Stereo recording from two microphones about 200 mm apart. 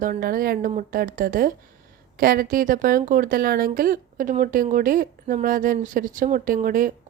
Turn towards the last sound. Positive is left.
turn(degrees=-45)  # may be behind; listen again after turning